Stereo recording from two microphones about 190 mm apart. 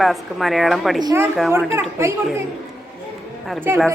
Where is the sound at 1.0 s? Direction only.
15° right (ahead or behind).